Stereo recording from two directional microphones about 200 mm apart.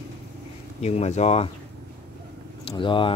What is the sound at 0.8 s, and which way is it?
Speech, 35° left (ahead or behind).